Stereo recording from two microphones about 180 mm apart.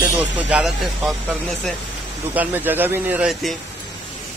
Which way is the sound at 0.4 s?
5° right (ahead or behind).